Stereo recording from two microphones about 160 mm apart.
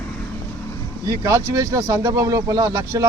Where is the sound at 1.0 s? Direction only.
20° right (ahead or behind).